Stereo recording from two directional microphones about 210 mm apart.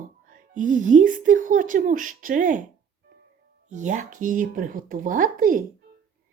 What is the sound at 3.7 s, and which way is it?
Speech, 35° right (ahead or behind).